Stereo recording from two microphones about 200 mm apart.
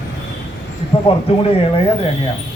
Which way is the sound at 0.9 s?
25° left (ahead or behind).